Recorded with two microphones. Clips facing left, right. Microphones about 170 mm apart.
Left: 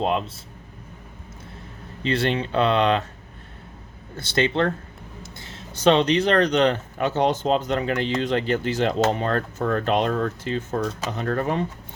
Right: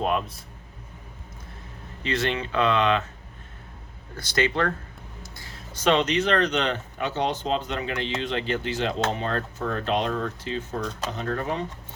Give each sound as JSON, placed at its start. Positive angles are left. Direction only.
{"t": 0.0, "sound": "a sound", "side_deg": 25}
{"t": 2.0, "sound": "speech", "side_deg": 30}
{"t": 4.2, "sound": "speech", "side_deg": 30}